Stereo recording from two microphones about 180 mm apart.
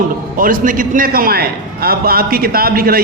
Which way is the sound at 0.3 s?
50° right (ahead or behind).